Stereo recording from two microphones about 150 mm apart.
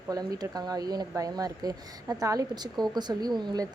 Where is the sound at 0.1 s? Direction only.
25° right (ahead or behind).